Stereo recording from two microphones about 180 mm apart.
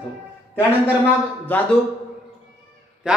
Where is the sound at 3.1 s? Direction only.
5° right (ahead or behind).